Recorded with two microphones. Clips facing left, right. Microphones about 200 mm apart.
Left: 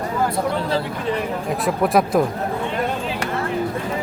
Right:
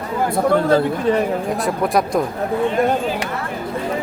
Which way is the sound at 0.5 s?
50° right (ahead or behind).